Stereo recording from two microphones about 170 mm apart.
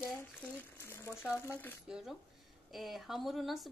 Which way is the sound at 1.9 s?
5° right (ahead or behind).